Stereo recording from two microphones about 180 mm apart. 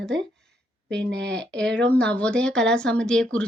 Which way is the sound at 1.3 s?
5° left (ahead or behind).